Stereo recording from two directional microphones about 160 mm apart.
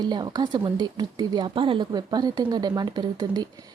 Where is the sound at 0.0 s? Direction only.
25° right (ahead or behind).